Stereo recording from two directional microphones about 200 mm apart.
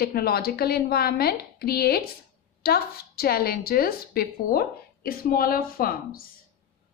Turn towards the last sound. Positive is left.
turn(degrees=45)  # may be behind; listen again after turning